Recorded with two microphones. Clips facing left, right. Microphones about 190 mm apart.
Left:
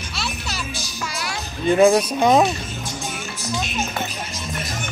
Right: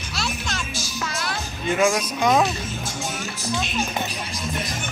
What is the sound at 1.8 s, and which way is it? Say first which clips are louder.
Speech: left 6 dB; 30° left (ahead or behind).